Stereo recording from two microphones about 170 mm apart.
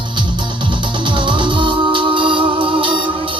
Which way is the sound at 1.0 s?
30° right (ahead or behind).